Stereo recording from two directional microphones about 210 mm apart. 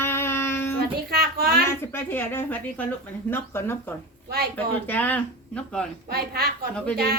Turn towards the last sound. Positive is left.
turn(degrees=5)  # may be behind; listen again after turning